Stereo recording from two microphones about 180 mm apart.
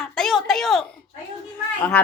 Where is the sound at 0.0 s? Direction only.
Centre (ahead or behind).